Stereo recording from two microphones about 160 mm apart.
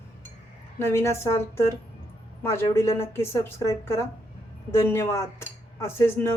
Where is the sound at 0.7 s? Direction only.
15° left (ahead or behind).